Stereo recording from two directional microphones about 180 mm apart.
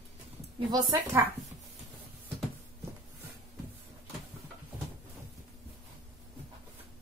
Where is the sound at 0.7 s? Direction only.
20° right (ahead or behind).